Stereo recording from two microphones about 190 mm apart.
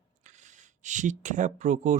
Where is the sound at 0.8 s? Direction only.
40° right (ahead or behind).